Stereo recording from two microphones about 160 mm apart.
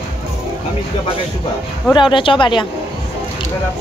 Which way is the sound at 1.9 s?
30° left (ahead or behind).